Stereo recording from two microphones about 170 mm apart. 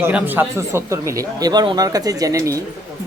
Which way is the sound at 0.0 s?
10° right (ahead or behind).